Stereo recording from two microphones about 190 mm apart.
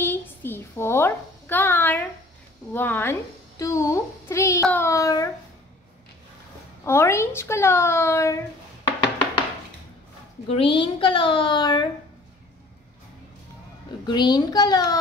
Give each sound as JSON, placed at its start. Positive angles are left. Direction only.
{"t": 0.0, "sound": "a sound", "side_deg": 10}
{"t": 2.7, "sound": "a child's voice", "side_deg": 10}
{"t": 6.8, "sound": "a child's voice", "side_deg": 15}
{"t": 10.5, "sound": "a child's voice", "side_deg": 25}
{"t": 14.0, "sound": "a child's voice", "side_deg": 20}